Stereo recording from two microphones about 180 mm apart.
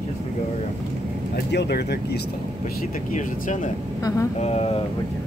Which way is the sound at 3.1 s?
45° left (ahead or behind).